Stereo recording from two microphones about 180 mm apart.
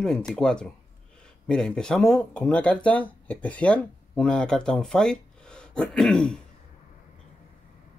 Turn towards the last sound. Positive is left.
turn(degrees=5)  # may be behind; listen again after turning